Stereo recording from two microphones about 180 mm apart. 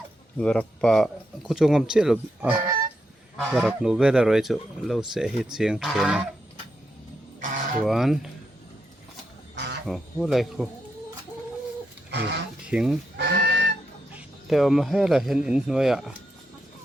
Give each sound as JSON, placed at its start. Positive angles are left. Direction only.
{"t": 0.3, "sound": "speech", "side_deg": 5}
{"t": 7.4, "sound": "a sound", "side_deg": -45}
{"t": 7.9, "sound": "speech", "side_deg": 0}
{"t": 9.8, "sound": "speech", "side_deg": 0}
{"t": 12.1, "sound": "speech", "side_deg": -70}
{"t": 12.6, "sound": "speech", "side_deg": -5}
{"t": 13.1, "sound": "goose", "side_deg": -70}
{"t": 14.1, "sound": "speech", "side_deg": -5}